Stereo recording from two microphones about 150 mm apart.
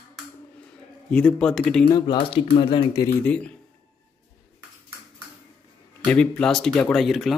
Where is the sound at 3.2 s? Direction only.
10° left (ahead or behind).